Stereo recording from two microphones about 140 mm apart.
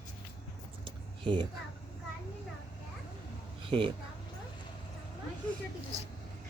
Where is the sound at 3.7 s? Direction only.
40° right (ahead or behind).